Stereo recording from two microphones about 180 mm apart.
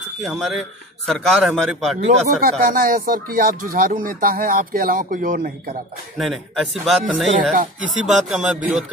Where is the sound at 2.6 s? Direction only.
50° right (ahead or behind).